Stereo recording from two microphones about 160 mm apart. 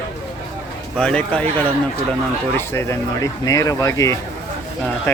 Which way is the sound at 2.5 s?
15° left (ahead or behind).